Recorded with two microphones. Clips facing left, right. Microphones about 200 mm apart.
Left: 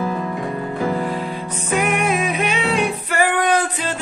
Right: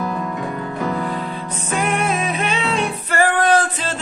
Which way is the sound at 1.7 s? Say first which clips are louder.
Left 1 dB; 10° left (ahead or behind).